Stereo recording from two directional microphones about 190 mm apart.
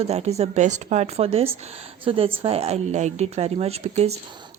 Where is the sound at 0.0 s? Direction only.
35° right (ahead or behind).